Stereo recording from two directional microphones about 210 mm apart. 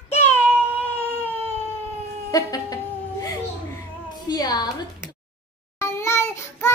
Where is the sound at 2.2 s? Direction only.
15° left (ahead or behind).